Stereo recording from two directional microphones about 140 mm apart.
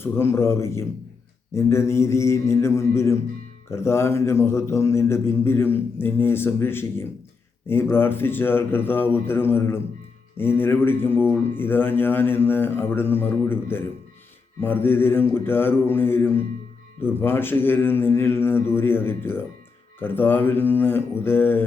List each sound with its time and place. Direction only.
0.0 s a man's voice: 15° left (ahead or behind)